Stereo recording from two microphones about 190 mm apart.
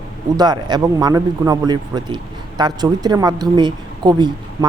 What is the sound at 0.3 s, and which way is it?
A man's voice, 20° right (ahead or behind).